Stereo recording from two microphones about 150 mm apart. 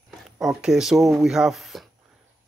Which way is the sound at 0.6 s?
5° right (ahead or behind).